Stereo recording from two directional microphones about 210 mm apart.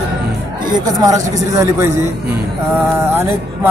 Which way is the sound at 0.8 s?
15° right (ahead or behind).